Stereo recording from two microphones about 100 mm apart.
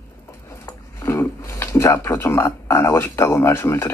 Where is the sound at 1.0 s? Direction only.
30° left (ahead or behind).